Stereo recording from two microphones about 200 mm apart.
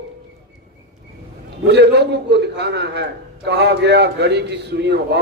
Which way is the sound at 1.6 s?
55° right (ahead or behind).